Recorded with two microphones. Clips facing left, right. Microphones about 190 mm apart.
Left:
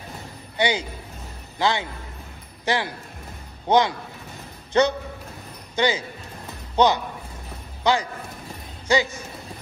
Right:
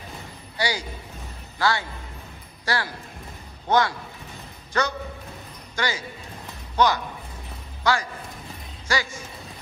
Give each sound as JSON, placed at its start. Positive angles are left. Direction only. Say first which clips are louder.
{"t": 0.6, "sound": "a man's voice", "louder": "left 4 dB", "side_deg": 20}